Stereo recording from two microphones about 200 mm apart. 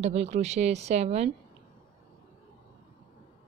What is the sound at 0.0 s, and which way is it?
Speech, 35° right (ahead or behind).